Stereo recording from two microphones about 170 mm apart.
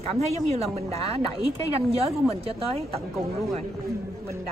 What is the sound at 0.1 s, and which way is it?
A woman's voice, 35° right (ahead or behind).